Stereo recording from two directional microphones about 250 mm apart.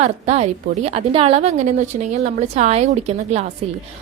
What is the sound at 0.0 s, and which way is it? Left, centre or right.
A woman's voice, right.